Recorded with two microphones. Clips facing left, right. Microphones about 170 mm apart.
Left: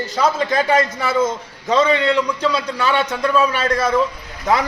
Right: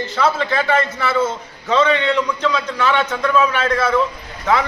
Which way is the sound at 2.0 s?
10° left (ahead or behind).